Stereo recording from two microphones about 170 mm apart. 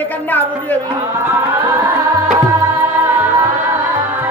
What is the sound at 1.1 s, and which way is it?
Music, 15° right (ahead or behind).